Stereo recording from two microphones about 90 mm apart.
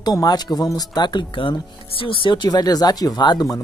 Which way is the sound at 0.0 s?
50° left (ahead or behind).